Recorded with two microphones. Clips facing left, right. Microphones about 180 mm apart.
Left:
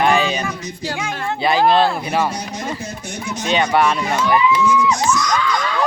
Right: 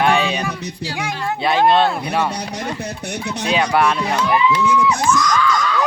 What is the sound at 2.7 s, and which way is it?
Speech, 65° right (ahead or behind).